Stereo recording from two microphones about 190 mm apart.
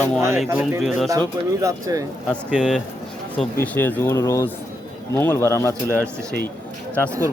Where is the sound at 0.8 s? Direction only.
Centre (ahead or behind).